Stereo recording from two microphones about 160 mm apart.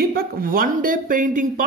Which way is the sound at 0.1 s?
65° right (ahead or behind).